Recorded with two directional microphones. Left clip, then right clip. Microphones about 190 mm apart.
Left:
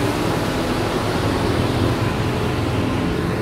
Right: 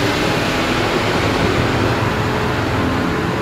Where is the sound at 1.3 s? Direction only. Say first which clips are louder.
Right 4 dB; 25° right (ahead or behind).